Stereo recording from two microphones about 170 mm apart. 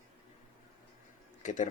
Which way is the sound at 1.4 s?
45° left (ahead or behind).